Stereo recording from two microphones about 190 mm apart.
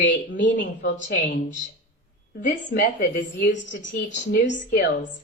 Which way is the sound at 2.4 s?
50° left (ahead or behind).